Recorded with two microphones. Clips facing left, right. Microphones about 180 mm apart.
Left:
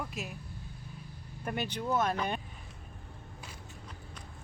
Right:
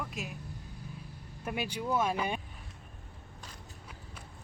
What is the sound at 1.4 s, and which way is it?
A man's voice, 5° right (ahead or behind).